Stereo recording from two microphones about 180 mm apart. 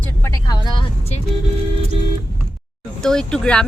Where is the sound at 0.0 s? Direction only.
15° left (ahead or behind).